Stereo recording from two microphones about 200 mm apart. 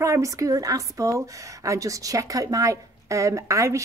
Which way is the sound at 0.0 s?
15° right (ahead or behind).